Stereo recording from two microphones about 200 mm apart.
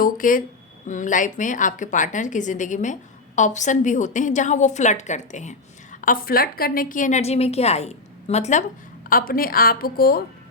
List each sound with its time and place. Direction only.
0.0 s a woman's voice: 40° left (ahead or behind)
9.0 s a woman's voice: 45° left (ahead or behind)